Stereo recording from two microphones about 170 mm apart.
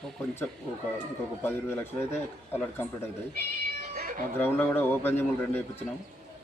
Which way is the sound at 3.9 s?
60° right (ahead or behind).